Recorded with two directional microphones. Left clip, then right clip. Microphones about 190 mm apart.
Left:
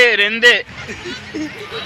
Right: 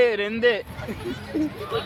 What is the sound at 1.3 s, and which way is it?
Speech, 65° right (ahead or behind).